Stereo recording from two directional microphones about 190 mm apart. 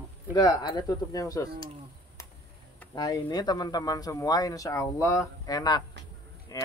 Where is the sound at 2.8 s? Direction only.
15° left (ahead or behind).